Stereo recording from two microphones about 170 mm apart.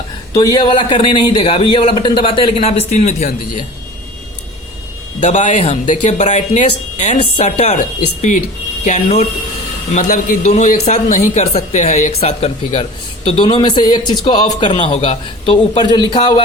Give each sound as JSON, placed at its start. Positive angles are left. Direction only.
{"t": 0.3, "sound": "speech", "side_deg": 25}
{"t": 5.2, "sound": "speech", "side_deg": 45}
{"t": 8.8, "sound": "a man's voice", "side_deg": 45}